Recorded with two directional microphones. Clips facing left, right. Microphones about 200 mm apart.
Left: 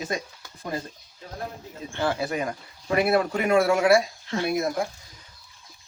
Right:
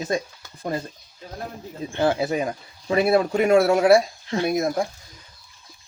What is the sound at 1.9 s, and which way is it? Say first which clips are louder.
Speech: right 5 dB; 20° right (ahead or behind).